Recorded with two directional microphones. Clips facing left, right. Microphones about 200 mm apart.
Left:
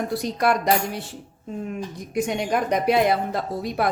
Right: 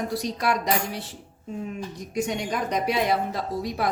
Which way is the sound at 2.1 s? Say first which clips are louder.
Left 4 dB; 55° left (ahead or behind).